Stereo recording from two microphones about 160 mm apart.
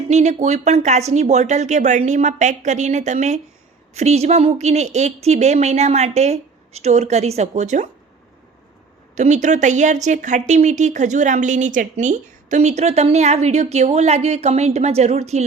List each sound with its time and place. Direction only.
0.1 s speech: 45° right (ahead or behind)
9.1 s speech: 50° right (ahead or behind)